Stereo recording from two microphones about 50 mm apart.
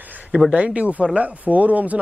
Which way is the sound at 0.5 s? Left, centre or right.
Right.